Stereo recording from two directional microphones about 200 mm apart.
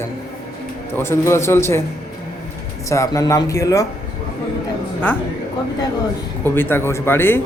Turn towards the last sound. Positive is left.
turn(degrees=10)  # may be behind; listen again after turning